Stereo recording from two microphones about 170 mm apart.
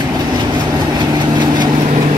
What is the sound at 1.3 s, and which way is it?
Vehicle, 25° right (ahead or behind).